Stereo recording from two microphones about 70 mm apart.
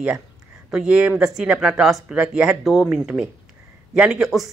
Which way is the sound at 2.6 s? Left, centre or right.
Centre.